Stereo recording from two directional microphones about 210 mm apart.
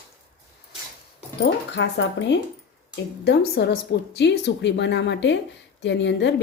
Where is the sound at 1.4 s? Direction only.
55° left (ahead or behind).